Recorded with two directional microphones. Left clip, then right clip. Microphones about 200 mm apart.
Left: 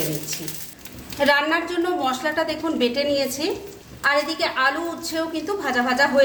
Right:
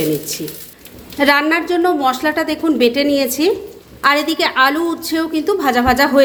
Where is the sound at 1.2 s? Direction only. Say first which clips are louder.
Right 5 dB; 40° right (ahead or behind).